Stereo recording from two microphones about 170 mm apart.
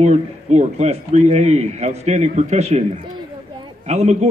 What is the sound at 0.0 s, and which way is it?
A man's voice, 40° right (ahead or behind).